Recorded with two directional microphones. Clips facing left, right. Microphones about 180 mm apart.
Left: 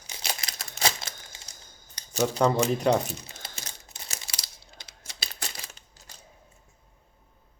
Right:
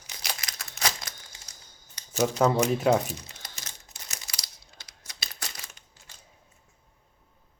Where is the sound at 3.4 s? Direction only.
30° left (ahead or behind).